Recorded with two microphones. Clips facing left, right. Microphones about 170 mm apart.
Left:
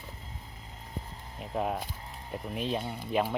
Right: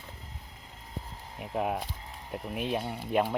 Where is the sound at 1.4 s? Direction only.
5° right (ahead or behind).